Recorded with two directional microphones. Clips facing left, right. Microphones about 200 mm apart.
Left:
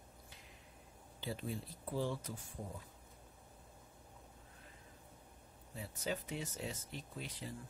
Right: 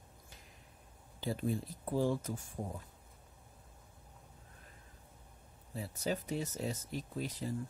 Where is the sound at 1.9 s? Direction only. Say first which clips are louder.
Right 6 dB; 45° right (ahead or behind).